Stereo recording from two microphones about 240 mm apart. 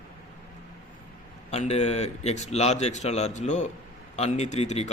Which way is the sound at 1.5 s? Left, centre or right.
Left.